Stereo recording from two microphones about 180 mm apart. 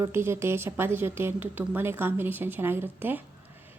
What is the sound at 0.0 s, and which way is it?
A woman's voice, 15° right (ahead or behind).